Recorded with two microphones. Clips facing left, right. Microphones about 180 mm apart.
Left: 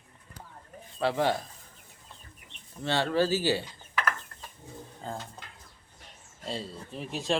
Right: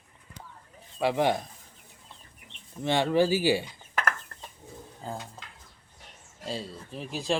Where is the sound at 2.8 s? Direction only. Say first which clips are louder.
Right 3 dB; 15° right (ahead or behind).